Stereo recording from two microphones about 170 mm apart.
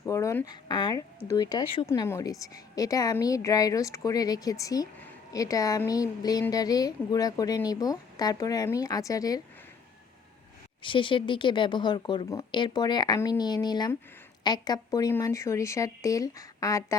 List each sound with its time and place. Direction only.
0.0 s speech: 20° left (ahead or behind)
1.9 s speech: 15° left (ahead or behind)
10.8 s speech: 30° left (ahead or behind)